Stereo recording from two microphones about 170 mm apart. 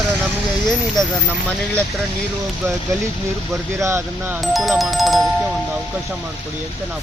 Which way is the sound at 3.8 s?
15° right (ahead or behind).